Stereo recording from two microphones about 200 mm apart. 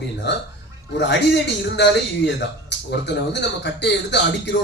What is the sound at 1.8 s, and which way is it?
Speech, 60° left (ahead or behind).